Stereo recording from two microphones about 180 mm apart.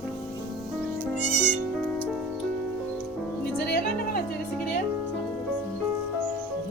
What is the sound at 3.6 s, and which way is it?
Music, 60° left (ahead or behind).